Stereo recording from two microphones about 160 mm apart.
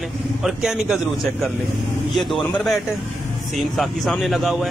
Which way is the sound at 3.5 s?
Centre (ahead or behind).